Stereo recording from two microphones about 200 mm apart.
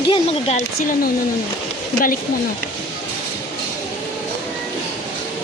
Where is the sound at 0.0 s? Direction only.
30° left (ahead or behind).